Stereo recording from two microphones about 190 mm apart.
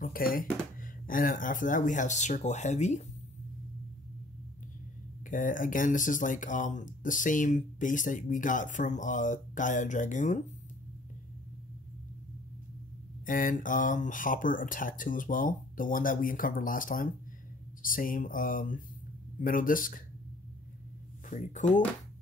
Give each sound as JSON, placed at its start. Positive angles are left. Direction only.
{"t": 0.0, "sound": "speech", "side_deg": 50}
{"t": 5.2, "sound": "speech", "side_deg": 45}
{"t": 13.2, "sound": "speech", "side_deg": 45}
{"t": 21.3, "sound": "speech", "side_deg": 40}